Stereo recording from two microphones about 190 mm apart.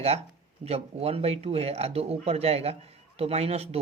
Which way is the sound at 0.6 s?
35° right (ahead or behind).